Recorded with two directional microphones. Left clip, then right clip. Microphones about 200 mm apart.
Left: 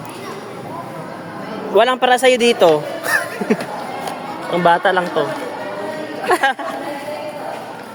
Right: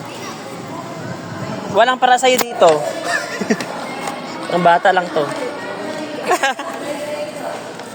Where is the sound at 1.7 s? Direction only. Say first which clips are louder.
Right 1 dB; 55° left (ahead or behind); by 3.2 s 40° left (ahead or behind).